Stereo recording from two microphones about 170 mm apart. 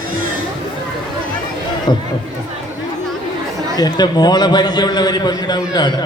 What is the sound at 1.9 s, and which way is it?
Speech, 30° left (ahead or behind).